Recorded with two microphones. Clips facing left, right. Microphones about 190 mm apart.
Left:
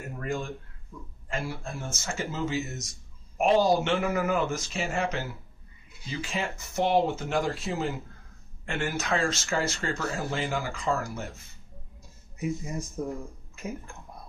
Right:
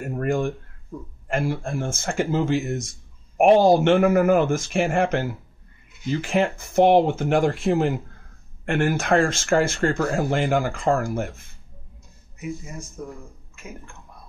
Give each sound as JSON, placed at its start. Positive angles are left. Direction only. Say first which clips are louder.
{"t": 0.0, "sound": "a sound", "louder": "right 9 dB", "side_deg": -50}
{"t": 0.9, "sound": "speech", "louder": "right 8 dB", "side_deg": -45}
{"t": 13.0, "sound": "speech", "louder": "left 3 dB", "side_deg": 25}